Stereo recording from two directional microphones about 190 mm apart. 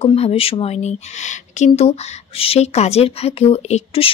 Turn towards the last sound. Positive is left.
turn(degrees=30)  # may be behind; listen again after turning